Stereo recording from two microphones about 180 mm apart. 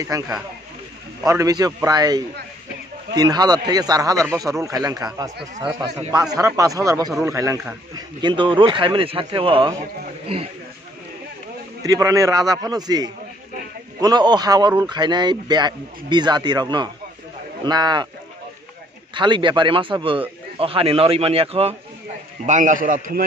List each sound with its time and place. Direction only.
0.1 s a man's voice: 20° right (ahead or behind)
11.8 s a man's voice: 20° right (ahead or behind)
19.1 s a man's voice: 25° right (ahead or behind)
22.5 s a man's voice: 45° right (ahead or behind)